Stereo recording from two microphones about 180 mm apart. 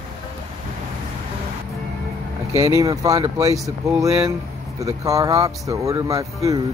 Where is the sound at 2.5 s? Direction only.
20° right (ahead or behind).